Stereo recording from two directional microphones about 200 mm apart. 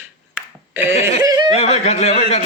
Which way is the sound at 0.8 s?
30° left (ahead or behind).